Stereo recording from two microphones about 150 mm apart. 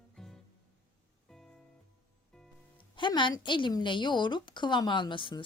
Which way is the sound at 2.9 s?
30° left (ahead or behind).